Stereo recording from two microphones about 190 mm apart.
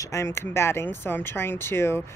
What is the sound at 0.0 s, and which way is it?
Speech, 15° left (ahead or behind).